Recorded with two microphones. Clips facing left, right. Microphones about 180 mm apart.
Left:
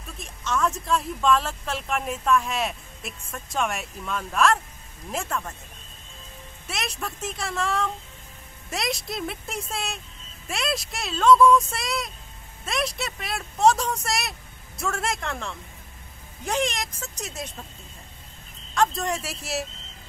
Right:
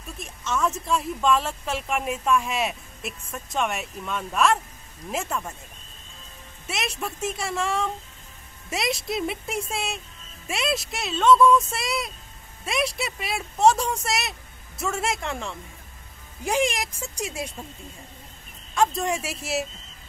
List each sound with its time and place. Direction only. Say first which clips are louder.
0.0 s speech: right 1 dB; centre (ahead or behind)
6.7 s speech: right 2 dB; centre (ahead or behind)
19.0 s speech: right 2 dB; 5° right (ahead or behind)